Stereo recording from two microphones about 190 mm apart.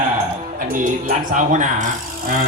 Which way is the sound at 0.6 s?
45° right (ahead or behind).